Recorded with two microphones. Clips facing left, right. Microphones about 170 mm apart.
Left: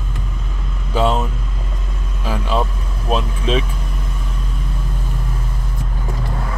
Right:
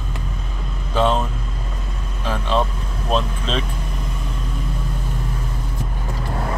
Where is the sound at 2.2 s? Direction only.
10° left (ahead or behind).